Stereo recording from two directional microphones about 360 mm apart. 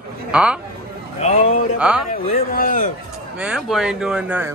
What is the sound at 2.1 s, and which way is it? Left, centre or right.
Speech, left.